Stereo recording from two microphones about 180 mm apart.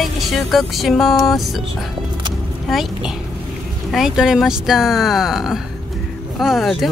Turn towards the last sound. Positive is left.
turn(degrees=0)  # may be behind; listen again after turning